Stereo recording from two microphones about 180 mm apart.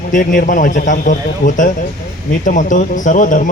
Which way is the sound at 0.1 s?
50° left (ahead or behind).